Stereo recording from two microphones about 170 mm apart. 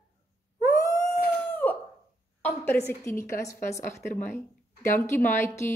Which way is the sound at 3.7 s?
45° left (ahead or behind).